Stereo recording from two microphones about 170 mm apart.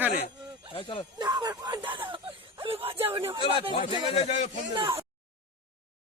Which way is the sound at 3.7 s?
35° left (ahead or behind).